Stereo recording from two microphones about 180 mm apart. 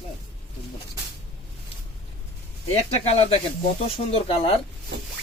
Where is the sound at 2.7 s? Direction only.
35° left (ahead or behind).